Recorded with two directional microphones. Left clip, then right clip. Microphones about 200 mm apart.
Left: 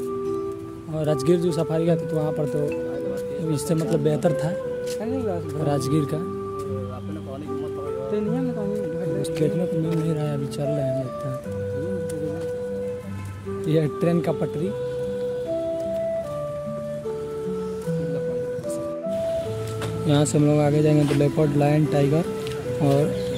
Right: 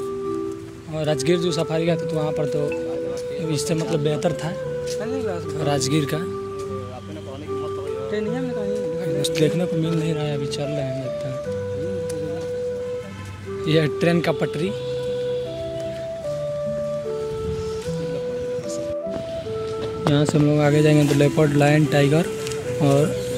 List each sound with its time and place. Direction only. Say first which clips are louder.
1.0 s speech: right 1 dB; 20° left (ahead or behind)
5.7 s speech: right 2 dB; 15° left (ahead or behind)
9.2 s a man's voice: right 4 dB; 5° right (ahead or behind)
13.7 s speech: right 3 dB; 5° left (ahead or behind)
20.2 s speech: even; centre (ahead or behind)